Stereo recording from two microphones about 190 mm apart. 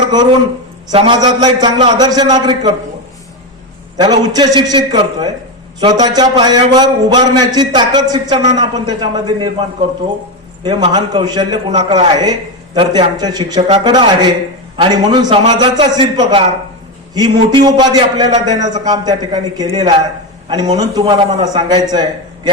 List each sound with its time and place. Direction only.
0.9 s a man's voice: 25° right (ahead or behind)
3.9 s a man's voice: 20° right (ahead or behind)
21.0 s a man's voice: 30° right (ahead or behind)
21.4 s a man's voice: 20° right (ahead or behind)